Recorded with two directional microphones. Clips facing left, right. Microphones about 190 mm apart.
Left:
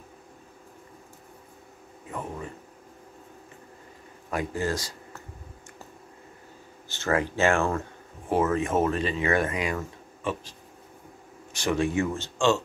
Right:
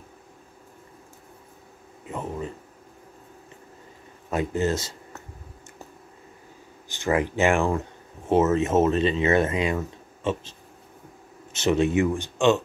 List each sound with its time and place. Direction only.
2.0 s speech: 20° right (ahead or behind)
4.3 s speech: 25° right (ahead or behind)
6.9 s speech: 15° right (ahead or behind)
11.5 s speech: 20° right (ahead or behind)